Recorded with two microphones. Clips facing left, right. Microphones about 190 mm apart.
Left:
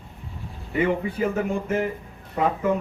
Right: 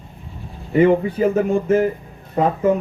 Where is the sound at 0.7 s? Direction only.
40° right (ahead or behind).